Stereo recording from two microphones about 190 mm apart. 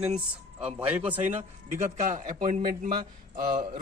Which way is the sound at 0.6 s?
30° right (ahead or behind).